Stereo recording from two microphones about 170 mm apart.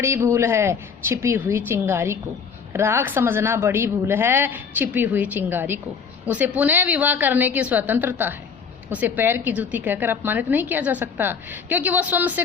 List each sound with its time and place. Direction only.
0.0 s a woman's voice: 15° right (ahead or behind)